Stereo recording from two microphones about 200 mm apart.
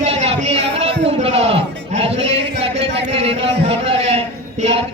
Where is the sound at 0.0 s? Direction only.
35° right (ahead or behind).